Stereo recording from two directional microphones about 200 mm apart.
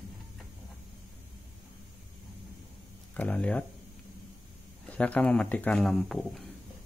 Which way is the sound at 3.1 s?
5° left (ahead or behind).